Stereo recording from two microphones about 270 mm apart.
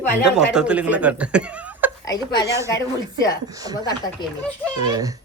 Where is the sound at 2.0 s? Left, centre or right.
Centre.